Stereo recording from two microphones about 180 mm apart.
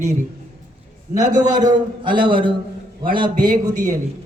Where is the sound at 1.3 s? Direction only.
20° right (ahead or behind).